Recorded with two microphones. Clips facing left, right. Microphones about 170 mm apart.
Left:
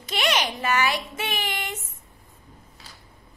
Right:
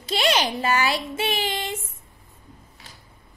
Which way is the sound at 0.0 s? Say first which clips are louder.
Right 3 dB; 30° right (ahead or behind).